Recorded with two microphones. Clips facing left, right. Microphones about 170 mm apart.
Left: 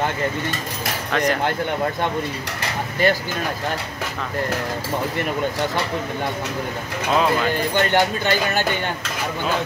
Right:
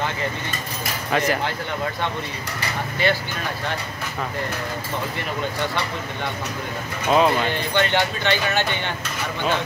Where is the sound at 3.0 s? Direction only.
45° left (ahead or behind).